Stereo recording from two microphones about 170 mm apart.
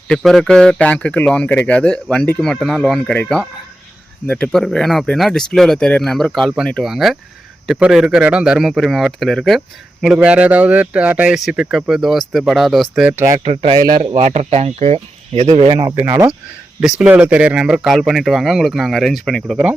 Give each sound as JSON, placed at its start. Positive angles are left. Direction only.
{"t": 0.1, "sound": "speech", "side_deg": 0}
{"t": 13.4, "sound": "speech", "side_deg": -35}
{"t": 14.0, "sound": "speech", "side_deg": -45}
{"t": 16.0, "sound": "speech", "side_deg": -15}